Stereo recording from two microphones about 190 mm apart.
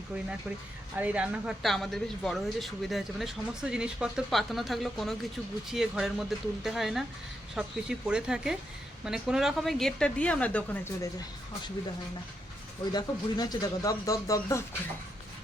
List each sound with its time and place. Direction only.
0.9 s speech: 5° right (ahead or behind); by 11.1 s 10° left (ahead or behind)
12.9 s speech: 20° left (ahead or behind)